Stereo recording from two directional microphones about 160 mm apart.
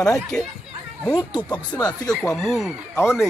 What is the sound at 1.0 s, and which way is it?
A man's voice, 25° left (ahead or behind).